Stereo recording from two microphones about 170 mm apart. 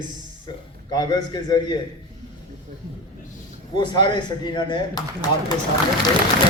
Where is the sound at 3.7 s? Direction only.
25° left (ahead or behind).